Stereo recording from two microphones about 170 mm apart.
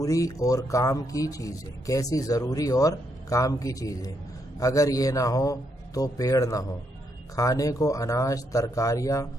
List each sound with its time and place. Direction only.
0.0 s speech: 20° left (ahead or behind)